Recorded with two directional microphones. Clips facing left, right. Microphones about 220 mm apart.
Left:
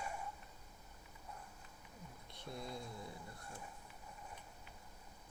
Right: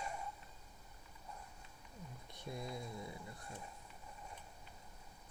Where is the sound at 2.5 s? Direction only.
20° right (ahead or behind).